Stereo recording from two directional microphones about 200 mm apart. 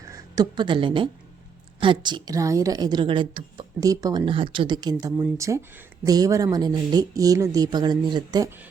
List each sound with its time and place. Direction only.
0.0 s a woman's voice: 20° right (ahead or behind)